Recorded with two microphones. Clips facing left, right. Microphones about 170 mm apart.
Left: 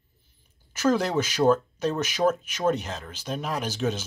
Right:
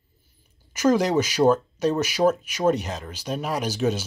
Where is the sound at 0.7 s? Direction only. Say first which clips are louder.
Right 3 dB; 15° right (ahead or behind).